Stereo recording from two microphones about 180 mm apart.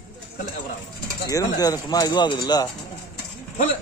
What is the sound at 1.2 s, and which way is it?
Speech, 20° left (ahead or behind).